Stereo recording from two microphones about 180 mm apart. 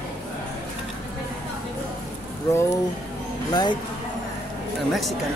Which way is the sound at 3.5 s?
25° left (ahead or behind).